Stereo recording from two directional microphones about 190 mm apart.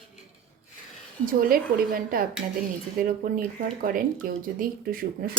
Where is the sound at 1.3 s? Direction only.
50° right (ahead or behind).